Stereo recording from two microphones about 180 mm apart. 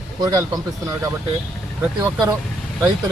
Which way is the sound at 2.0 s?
20° right (ahead or behind).